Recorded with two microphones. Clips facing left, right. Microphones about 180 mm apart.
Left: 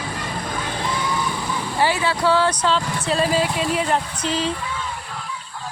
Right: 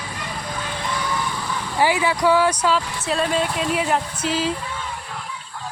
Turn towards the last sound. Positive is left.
turn(degrees=-5)  # may be behind; listen again after turning